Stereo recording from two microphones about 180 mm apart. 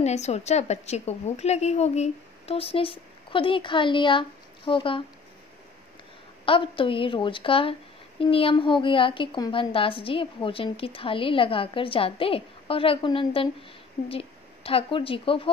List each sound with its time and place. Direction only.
0.0 s a woman's voice: 40° left (ahead or behind)
6.4 s a woman's voice: 30° left (ahead or behind)